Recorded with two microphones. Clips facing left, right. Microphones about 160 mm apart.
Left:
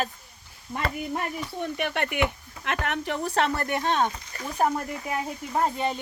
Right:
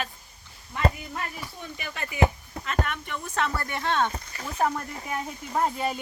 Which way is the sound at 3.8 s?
15° left (ahead or behind).